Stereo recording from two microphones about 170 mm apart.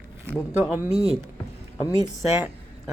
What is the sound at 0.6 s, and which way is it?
Speech, 10° right (ahead or behind).